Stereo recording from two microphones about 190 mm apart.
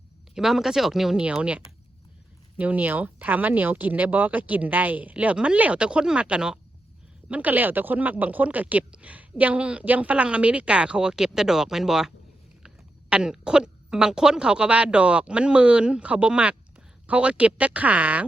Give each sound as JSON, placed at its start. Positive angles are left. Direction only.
{"t": 0.3, "sound": "speech", "side_deg": 0}